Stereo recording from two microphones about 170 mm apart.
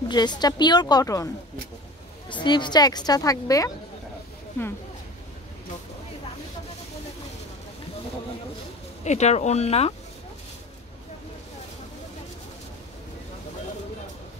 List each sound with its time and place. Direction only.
0.1 s a woman's voice: 25° left (ahead or behind)
9.0 s speech: 40° left (ahead or behind)